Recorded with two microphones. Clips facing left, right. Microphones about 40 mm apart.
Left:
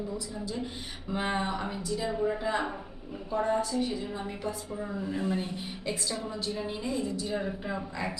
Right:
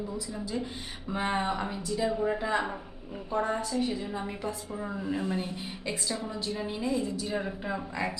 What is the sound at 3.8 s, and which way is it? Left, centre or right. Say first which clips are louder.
A woman's voice: right 1 dB; centre.